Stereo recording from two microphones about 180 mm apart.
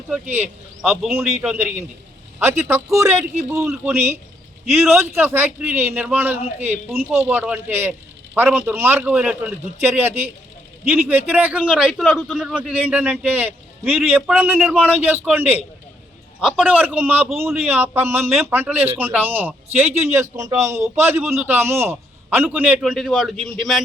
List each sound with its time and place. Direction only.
0.1 s a man's voice: 10° right (ahead or behind)